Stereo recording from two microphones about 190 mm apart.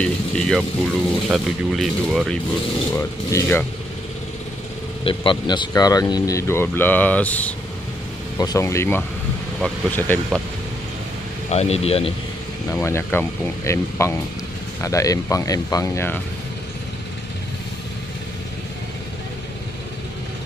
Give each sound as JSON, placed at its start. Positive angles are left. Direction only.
{"t": 0.0, "sound": "speech", "side_deg": 5}
{"t": 2.9, "sound": "speech", "side_deg": 15}
{"t": 5.0, "sound": "speech", "side_deg": 25}
{"t": 11.5, "sound": "speech", "side_deg": 35}
{"t": 12.8, "sound": "speech", "side_deg": 15}